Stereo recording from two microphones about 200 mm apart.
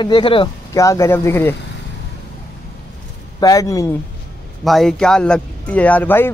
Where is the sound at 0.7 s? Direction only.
15° left (ahead or behind).